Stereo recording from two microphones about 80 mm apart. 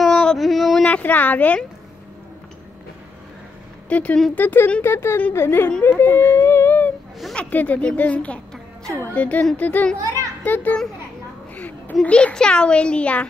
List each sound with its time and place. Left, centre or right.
0.0 s a sound: centre
0.8 s speech: left
3.9 s a woman's voice: centre
4.8 s speech: left
7.3 s a woman's voice: centre
9.9 s a child's voice: right
10.4 s a woman's voice: left